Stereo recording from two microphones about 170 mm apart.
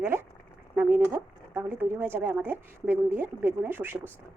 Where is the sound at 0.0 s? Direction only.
15° right (ahead or behind).